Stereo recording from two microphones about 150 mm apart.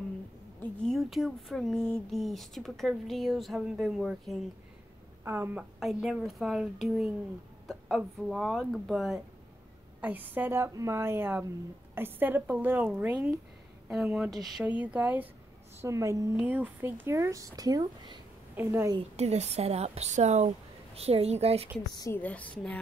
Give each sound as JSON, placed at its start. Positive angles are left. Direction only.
{"t": 0.6, "sound": "speech", "side_deg": 0}
{"t": 5.2, "sound": "a woman's voice", "side_deg": -15}
{"t": 5.8, "sound": "a woman's voice", "side_deg": 0}
{"t": 19.1, "sound": "speech", "side_deg": -45}
{"t": 21.9, "sound": "a woman's voice", "side_deg": 20}
{"t": 22.2, "sound": "a woman's voice", "side_deg": 10}